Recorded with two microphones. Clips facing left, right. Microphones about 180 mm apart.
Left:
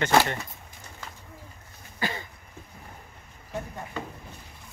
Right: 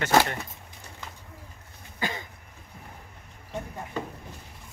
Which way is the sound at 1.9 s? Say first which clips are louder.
Left 1 dB; 15° right (ahead or behind).